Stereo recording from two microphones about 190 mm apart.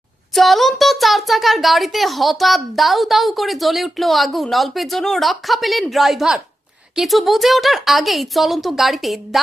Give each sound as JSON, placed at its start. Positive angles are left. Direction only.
{"t": 0.3, "sound": "a child's voice", "side_deg": 0}